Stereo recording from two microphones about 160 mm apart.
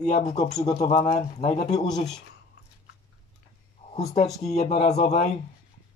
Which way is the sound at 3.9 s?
45° left (ahead or behind).